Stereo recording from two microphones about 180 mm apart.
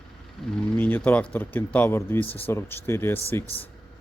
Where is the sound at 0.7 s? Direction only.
10° left (ahead or behind).